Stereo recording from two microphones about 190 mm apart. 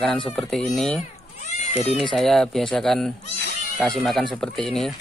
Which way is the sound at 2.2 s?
Centre (ahead or behind).